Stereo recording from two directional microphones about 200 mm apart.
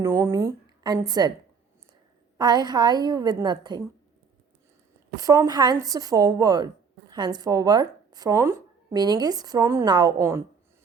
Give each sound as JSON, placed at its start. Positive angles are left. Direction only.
{"t": 0.0, "sound": "a woman's voice", "side_deg": -15}
{"t": 2.4, "sound": "speech", "side_deg": -20}
{"t": 5.1, "sound": "speech", "side_deg": -20}